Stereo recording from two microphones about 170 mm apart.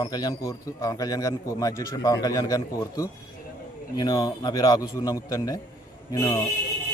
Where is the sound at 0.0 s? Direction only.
25° left (ahead or behind).